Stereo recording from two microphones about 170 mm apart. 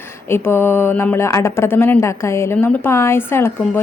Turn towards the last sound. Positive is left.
turn(degrees=15)  # may be behind; listen again after turning